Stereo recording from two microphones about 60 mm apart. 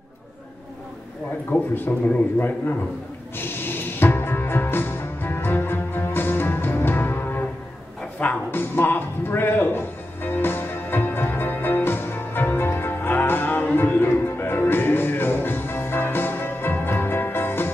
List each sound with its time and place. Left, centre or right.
1.5 s a man's voice: left
3.3 s music: left
8.5 s music: left